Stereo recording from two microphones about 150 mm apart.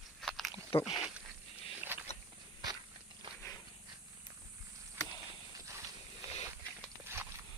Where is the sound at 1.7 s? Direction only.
10° right (ahead or behind).